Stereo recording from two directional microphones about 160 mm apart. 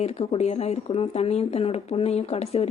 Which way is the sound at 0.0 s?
40° left (ahead or behind).